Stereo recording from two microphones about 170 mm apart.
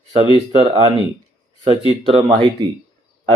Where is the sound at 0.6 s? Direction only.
35° right (ahead or behind).